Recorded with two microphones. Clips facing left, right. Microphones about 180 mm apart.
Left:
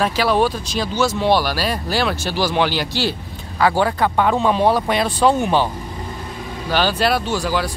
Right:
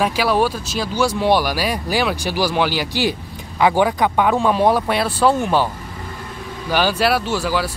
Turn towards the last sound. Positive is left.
turn(degrees=-5)  # may be behind; listen again after turning